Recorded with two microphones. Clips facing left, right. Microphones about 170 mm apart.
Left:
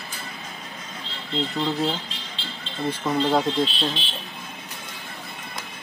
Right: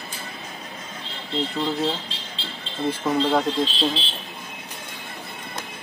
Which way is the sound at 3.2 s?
Centre (ahead or behind).